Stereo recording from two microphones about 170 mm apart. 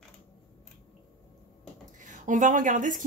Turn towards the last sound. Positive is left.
turn(degrees=-50)  # may be behind; listen again after turning